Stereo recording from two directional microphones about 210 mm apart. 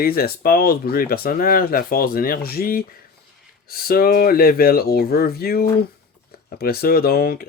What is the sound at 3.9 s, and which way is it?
Speech, 45° left (ahead or behind).